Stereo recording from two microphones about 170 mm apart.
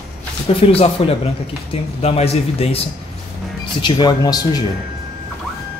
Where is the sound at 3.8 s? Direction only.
25° left (ahead or behind).